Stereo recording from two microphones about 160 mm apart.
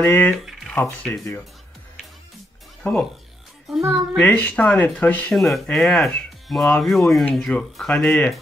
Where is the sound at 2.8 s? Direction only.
5° left (ahead or behind).